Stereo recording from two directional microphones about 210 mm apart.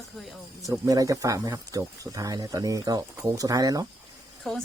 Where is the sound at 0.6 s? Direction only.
15° right (ahead or behind).